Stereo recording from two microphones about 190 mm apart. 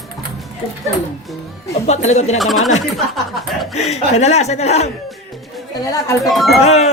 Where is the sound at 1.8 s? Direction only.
35° left (ahead or behind).